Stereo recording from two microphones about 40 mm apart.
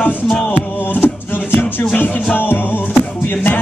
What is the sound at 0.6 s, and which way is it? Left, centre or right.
Music, left.